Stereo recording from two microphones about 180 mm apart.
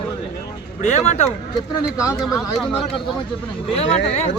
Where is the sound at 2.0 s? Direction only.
15° left (ahead or behind).